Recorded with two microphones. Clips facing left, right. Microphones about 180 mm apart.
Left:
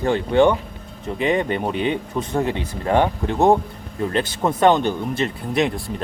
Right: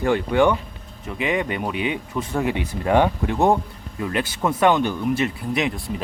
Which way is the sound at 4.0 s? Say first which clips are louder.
Left 2 dB; 30° left (ahead or behind).